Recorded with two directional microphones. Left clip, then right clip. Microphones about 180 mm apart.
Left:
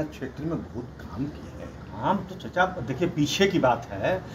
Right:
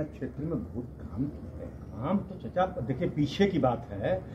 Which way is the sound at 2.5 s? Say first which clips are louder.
Left 5 dB; 15° right (ahead or behind).